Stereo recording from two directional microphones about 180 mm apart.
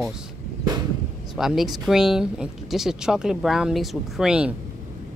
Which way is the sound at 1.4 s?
Centre (ahead or behind).